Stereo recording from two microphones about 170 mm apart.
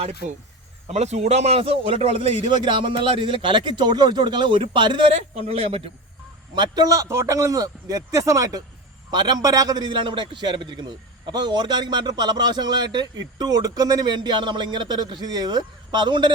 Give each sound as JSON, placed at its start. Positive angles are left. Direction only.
{"t": 0.9, "sound": "a man's voice", "side_deg": -40}